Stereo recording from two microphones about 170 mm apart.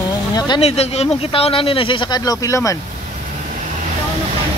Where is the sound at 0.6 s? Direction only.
35° left (ahead or behind); by 2.7 s 20° left (ahead or behind).